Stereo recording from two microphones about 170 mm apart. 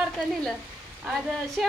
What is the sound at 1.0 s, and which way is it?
Speech, centre (ahead or behind).